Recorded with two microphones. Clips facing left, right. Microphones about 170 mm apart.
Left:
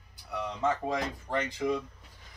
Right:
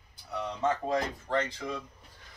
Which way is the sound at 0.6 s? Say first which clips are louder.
Right 1 dB; 10° left (ahead or behind).